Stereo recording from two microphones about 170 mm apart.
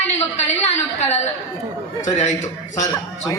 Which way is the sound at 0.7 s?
40° left (ahead or behind).